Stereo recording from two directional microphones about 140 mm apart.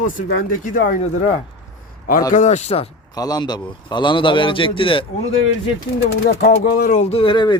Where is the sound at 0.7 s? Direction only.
60° left (ahead or behind).